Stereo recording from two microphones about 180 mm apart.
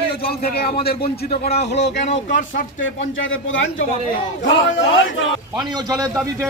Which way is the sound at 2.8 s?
90° left.